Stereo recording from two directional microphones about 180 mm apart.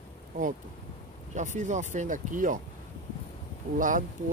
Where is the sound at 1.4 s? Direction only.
40° right (ahead or behind).